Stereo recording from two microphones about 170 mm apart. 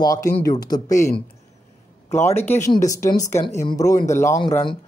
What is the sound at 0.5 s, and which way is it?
Speech, 25° left (ahead or behind).